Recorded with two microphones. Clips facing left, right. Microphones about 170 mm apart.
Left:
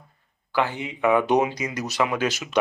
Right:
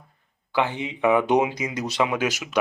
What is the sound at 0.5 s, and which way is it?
Speech, 20° right (ahead or behind).